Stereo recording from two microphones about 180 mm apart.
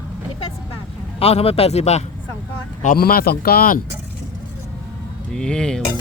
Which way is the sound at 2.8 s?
50° left (ahead or behind).